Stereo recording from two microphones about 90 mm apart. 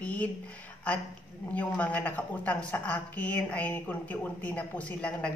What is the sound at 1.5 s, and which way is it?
A woman's voice, 15° left (ahead or behind).